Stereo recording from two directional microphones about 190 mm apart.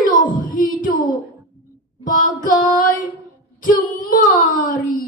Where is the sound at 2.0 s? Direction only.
45° left (ahead or behind).